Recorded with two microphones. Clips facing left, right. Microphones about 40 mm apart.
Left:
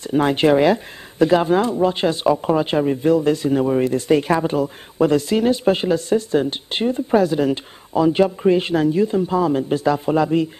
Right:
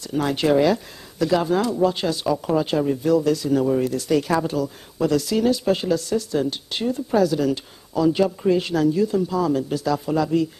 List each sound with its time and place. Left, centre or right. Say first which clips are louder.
0.0 s speech: left 5 dB; left